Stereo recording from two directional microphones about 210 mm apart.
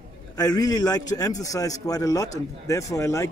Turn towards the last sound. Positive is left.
turn(degrees=15)  # may be behind; listen again after turning